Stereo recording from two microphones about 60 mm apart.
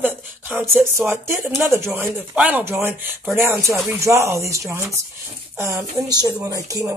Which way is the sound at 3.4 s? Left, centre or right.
Right.